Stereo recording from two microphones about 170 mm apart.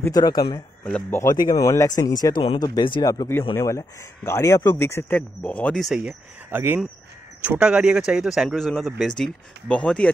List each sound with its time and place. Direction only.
0.0 s speech: 20° left (ahead or behind)
0.8 s speech: 10° left (ahead or behind)
1.3 s speech: 20° left (ahead or behind); by 10.1 s 5° left (ahead or behind)